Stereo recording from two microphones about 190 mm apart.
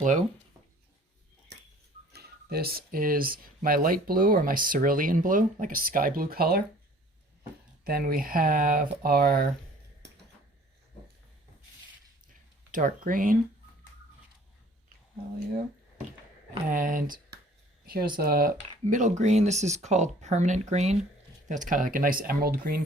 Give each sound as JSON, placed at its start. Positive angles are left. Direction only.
{"t": 2.1, "sound": "speech", "side_deg": -55}
{"t": 7.9, "sound": "speech", "side_deg": -50}
{"t": 12.7, "sound": "speech", "side_deg": -45}
{"t": 16.6, "sound": "speech", "side_deg": -45}